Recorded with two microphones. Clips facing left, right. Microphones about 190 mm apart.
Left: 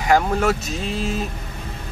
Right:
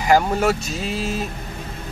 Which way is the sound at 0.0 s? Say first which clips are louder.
Right 1 dB; centre (ahead or behind).